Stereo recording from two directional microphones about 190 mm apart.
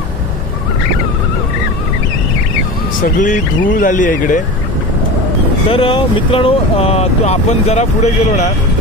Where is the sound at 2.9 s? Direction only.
45° left (ahead or behind).